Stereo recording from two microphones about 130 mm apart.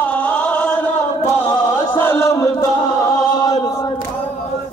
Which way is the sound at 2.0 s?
20° left (ahead or behind).